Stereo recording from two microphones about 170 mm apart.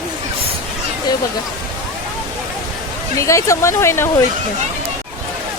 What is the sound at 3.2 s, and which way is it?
Speech, 15° left (ahead or behind).